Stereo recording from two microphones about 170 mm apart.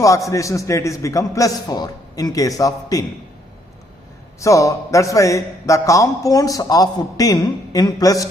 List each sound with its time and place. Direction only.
0.0 s a man's voice: 20° left (ahead or behind)
4.4 s a man's voice: 20° left (ahead or behind)